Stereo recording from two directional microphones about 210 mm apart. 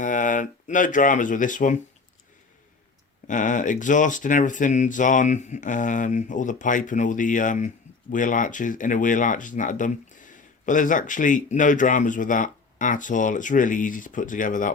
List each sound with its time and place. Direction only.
0.0 s speech: 40° left (ahead or behind)
3.2 s speech: 35° left (ahead or behind)